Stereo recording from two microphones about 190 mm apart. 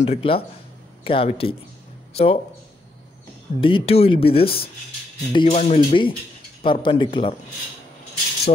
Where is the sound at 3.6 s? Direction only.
30° left (ahead or behind).